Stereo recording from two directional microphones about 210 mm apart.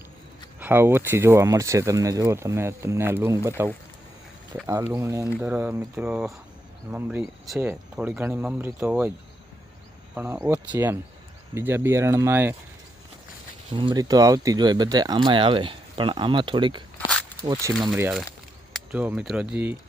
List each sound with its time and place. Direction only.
0.6 s speech: 10° right (ahead or behind)
4.6 s speech: 10° right (ahead or behind)
10.2 s speech: 10° right (ahead or behind)
13.7 s speech: 20° right (ahead or behind)
18.7 s speech: 5° right (ahead or behind)